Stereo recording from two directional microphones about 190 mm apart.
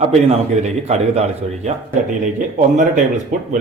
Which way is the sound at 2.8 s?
40° right (ahead or behind).